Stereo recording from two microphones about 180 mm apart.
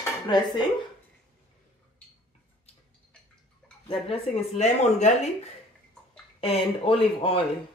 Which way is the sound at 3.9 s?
35° left (ahead or behind).